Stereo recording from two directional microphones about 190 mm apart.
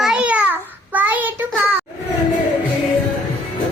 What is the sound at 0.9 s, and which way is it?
Child singing, 10° right (ahead or behind).